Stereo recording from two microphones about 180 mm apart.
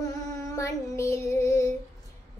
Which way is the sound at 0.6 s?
15° left (ahead or behind).